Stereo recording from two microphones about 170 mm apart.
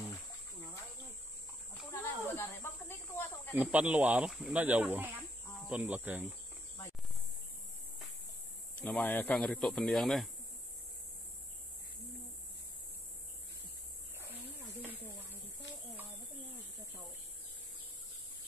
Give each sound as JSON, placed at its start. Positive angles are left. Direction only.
{"t": 1.9, "sound": "snake", "side_deg": 15}
{"t": 3.5, "sound": "speech", "side_deg": -10}
{"t": 8.7, "sound": "speech", "side_deg": 10}